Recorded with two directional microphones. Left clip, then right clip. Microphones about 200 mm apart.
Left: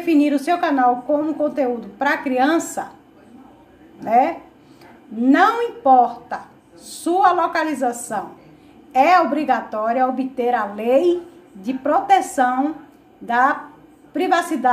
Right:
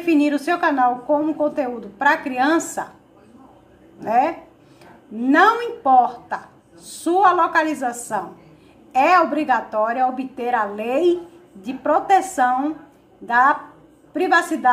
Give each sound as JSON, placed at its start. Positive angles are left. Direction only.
{"t": 0.1, "sound": "a woman's voice", "side_deg": 10}
{"t": 4.0, "sound": "a woman's voice", "side_deg": 10}
{"t": 5.3, "sound": "a woman's voice", "side_deg": 10}